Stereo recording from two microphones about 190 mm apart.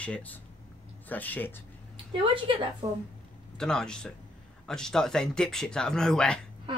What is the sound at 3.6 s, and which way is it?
Speech, 5° left (ahead or behind).